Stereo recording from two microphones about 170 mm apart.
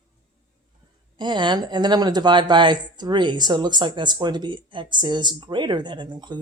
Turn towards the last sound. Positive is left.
turn(degrees=-25)  # may be behind; listen again after turning